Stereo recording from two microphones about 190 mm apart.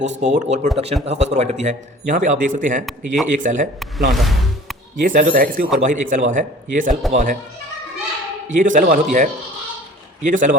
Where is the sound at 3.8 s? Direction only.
Centre (ahead or behind).